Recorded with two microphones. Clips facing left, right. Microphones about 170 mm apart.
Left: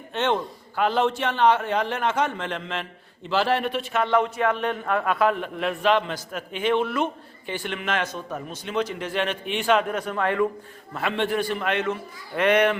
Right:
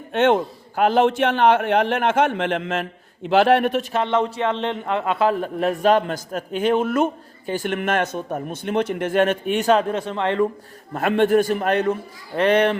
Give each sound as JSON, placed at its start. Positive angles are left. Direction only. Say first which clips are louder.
{"t": 0.1, "sound": "a man's voice", "louder": "right 7 dB", "side_deg": -50}
{"t": 3.9, "sound": "a man's voice", "louder": "right 1 dB", "side_deg": -25}
{"t": 9.9, "sound": "speech", "louder": "right 3 dB", "side_deg": -25}
{"t": 10.9, "sound": "a man's voice", "louder": "right 8 dB", "side_deg": -50}